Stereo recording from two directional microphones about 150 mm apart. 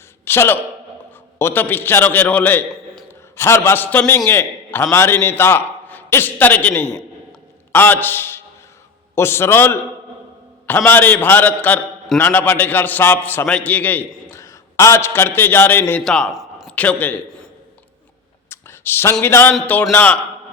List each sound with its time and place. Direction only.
0.3 s a man's voice: 15° left (ahead or behind); by 16.7 s centre (ahead or behind)
16.7 s a man's voice: 10° left (ahead or behind)
18.4 s a sound: 15° left (ahead or behind)
19.2 s a man's voice: 15° left (ahead or behind)